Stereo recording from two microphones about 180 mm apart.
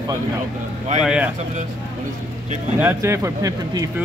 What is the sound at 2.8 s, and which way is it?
Speech, 15° right (ahead or behind).